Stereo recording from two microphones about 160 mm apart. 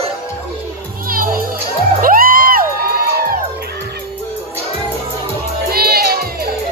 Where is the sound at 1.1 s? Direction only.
65° right (ahead or behind).